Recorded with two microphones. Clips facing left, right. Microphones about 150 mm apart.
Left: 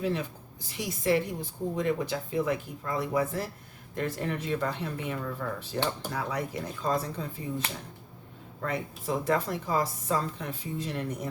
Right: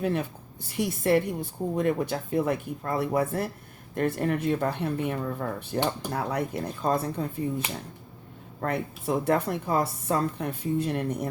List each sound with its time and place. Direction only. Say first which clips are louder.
0.0 s a woman's voice: right 3 dB; 55° right (ahead or behind)
8.6 s a woman's voice: right 4 dB; 60° right (ahead or behind)